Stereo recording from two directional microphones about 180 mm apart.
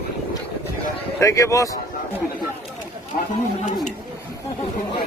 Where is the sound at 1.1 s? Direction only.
15° left (ahead or behind).